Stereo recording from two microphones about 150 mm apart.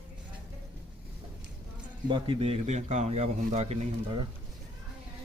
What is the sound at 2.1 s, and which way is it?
A man's voice, 40° right (ahead or behind).